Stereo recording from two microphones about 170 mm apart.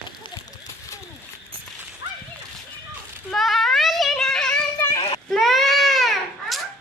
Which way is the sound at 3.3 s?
Centre (ahead or behind).